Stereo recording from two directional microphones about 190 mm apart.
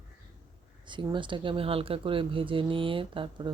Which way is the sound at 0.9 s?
25° right (ahead or behind).